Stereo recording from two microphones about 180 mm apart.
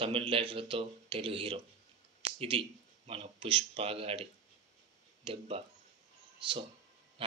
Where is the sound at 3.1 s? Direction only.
30° right (ahead or behind).